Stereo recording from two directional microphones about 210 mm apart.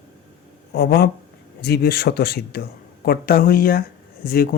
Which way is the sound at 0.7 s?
50° left (ahead or behind).